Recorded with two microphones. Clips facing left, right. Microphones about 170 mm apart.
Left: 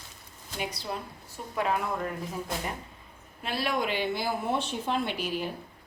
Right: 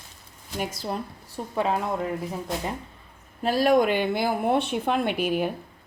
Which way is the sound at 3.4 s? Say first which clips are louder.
Right 10 dB; 40° right (ahead or behind).